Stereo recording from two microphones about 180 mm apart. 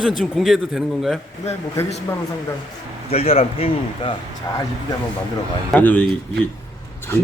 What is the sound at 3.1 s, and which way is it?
A man's voice, 35° left (ahead or behind).